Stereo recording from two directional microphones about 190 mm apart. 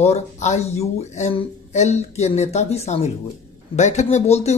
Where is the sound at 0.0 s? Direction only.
35° left (ahead or behind).